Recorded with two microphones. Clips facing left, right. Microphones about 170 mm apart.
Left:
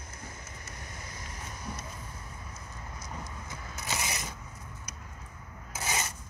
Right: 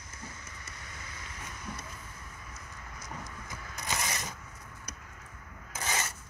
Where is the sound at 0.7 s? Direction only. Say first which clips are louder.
Left 4 dB; 40° left (ahead or behind).